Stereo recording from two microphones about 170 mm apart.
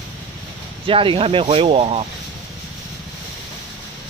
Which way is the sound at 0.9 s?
30° right (ahead or behind).